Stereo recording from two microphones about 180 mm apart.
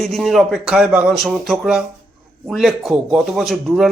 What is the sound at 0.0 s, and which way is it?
Speech, centre (ahead or behind).